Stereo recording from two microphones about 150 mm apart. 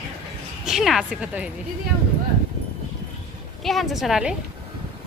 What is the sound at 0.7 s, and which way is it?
Speech, 5° right (ahead or behind).